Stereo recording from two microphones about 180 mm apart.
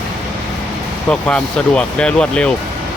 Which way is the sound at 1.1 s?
5° left (ahead or behind).